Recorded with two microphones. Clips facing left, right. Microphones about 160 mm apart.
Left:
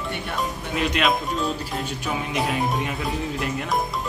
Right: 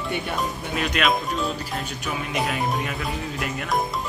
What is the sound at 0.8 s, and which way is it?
Speech, 25° left (ahead or behind).